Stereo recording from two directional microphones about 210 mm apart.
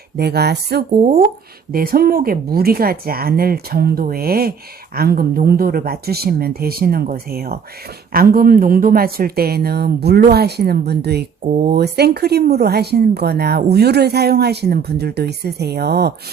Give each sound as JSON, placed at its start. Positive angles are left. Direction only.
{"t": 0.2, "sound": "speech", "side_deg": -50}